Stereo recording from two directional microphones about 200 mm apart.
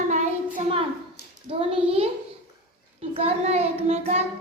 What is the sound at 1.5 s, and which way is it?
Speech, 30° right (ahead or behind).